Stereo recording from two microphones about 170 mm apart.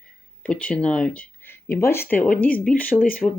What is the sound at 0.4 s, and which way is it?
Speech, 5° left (ahead or behind).